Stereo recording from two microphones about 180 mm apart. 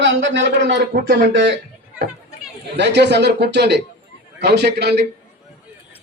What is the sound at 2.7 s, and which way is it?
A man's voice, 70° right (ahead or behind).